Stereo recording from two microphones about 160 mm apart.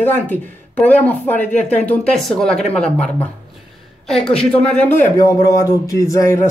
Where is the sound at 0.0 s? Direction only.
10° left (ahead or behind).